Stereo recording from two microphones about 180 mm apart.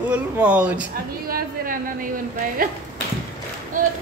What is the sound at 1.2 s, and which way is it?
A woman's voice, 50° right (ahead or behind).